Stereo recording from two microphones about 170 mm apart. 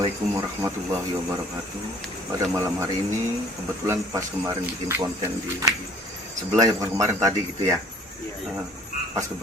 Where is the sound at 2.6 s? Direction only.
20° right (ahead or behind).